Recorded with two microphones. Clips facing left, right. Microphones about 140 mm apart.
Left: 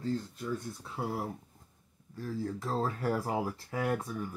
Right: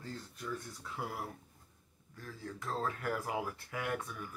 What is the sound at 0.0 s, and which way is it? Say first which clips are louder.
Speech: left 10 dB; 25° left (ahead or behind).